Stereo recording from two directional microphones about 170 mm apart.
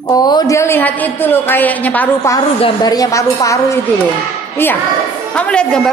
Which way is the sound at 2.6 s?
25° left (ahead or behind).